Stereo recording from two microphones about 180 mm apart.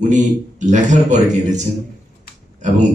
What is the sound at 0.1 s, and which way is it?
A man's voice, 40° right (ahead or behind).